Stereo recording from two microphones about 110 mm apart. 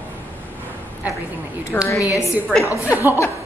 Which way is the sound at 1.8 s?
30° left (ahead or behind).